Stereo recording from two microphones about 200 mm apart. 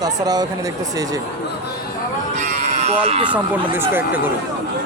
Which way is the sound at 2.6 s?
35° right (ahead or behind).